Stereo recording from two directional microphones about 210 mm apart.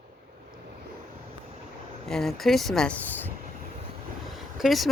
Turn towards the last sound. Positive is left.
turn(degrees=0)  # may be behind; listen again after turning